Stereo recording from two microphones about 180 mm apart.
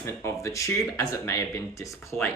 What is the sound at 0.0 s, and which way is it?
Speech, 15° left (ahead or behind).